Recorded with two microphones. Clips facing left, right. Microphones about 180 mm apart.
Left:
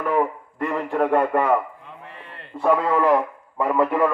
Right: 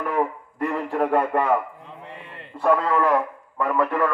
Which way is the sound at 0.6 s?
5° right (ahead or behind).